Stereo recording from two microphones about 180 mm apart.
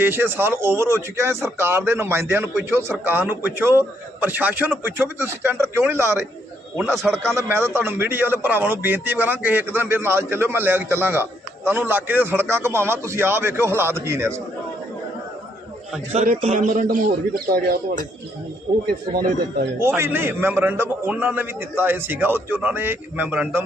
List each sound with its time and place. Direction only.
0.0 s speech: 10° right (ahead or behind)
7.3 s speech: 15° right (ahead or behind)
16.1 s a man's voice: 50° right (ahead or behind)
19.1 s a man's voice: 55° right (ahead or behind)
20.0 s speech: 10° right (ahead or behind)